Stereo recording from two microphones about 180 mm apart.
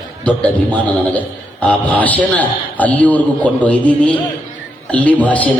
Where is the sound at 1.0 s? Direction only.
10° left (ahead or behind).